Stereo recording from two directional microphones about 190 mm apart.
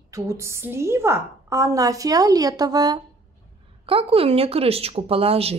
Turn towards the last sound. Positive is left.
turn(degrees=-30)  # may be behind; listen again after turning